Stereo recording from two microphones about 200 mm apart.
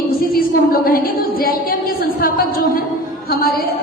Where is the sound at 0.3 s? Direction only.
45° left (ahead or behind).